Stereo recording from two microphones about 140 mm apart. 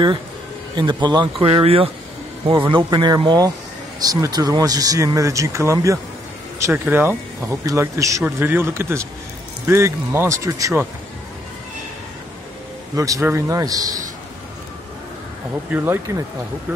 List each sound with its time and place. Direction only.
0.7 s speech: 30° right (ahead or behind)
12.9 s speech: 25° right (ahead or behind)
15.7 s speech: 15° right (ahead or behind)